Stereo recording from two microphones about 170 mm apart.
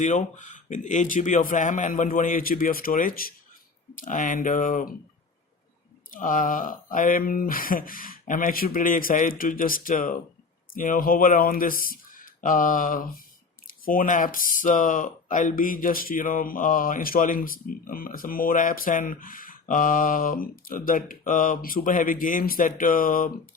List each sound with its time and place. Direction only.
0.0 s speech: 45° left (ahead or behind)
6.1 s speech: 50° left (ahead or behind)